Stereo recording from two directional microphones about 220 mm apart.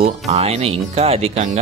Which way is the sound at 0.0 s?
30° right (ahead or behind).